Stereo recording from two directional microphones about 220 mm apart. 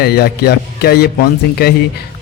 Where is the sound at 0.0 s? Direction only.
45° left (ahead or behind).